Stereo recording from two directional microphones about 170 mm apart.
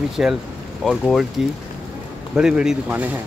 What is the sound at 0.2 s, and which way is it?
A man's voice, 5° right (ahead or behind).